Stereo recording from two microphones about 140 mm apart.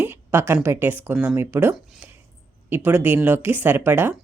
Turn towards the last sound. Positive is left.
turn(degrees=-15)  # may be behind; listen again after turning